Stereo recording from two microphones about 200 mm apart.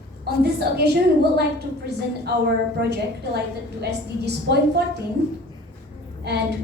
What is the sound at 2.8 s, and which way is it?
A woman's voice, 55° right (ahead or behind).